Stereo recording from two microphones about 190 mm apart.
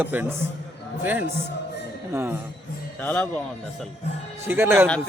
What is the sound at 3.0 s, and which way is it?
Music, 10° left (ahead or behind).